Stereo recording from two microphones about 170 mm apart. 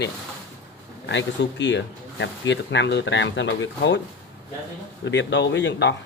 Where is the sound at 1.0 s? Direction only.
90° left.